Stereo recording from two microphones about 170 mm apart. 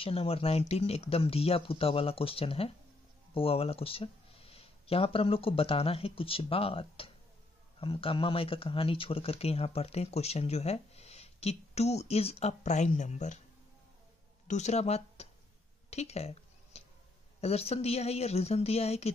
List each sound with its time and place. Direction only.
0.0 s speech: 35° left (ahead or behind)
14.5 s speech: 40° left (ahead or behind)
15.9 s a sound: 40° left (ahead or behind)
17.4 s speech: 35° left (ahead or behind)